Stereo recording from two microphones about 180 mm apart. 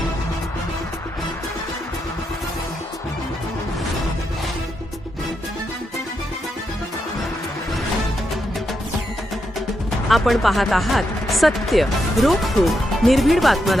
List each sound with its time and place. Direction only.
10.1 s speech: centre (ahead or behind)